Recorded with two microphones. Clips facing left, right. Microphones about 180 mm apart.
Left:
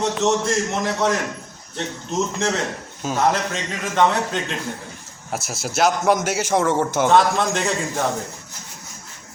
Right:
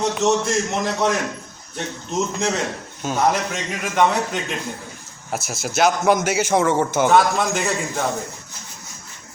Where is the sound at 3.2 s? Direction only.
15° right (ahead or behind).